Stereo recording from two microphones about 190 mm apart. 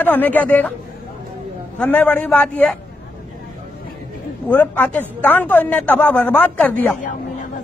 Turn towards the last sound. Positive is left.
turn(degrees=10)  # may be behind; listen again after turning